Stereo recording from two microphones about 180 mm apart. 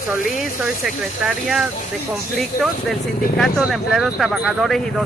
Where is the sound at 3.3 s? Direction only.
Centre (ahead or behind).